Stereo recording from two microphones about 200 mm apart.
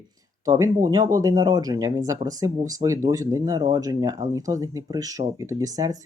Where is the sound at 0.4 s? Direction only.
15° right (ahead or behind).